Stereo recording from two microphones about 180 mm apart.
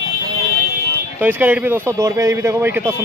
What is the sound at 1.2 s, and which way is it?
Speech, 10° right (ahead or behind).